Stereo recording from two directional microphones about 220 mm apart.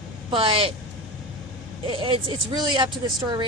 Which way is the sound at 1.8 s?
25° right (ahead or behind).